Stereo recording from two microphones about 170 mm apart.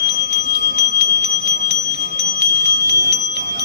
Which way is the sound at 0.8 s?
75° right (ahead or behind).